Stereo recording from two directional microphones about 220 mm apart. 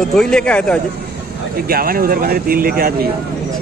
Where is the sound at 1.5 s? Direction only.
45° right (ahead or behind).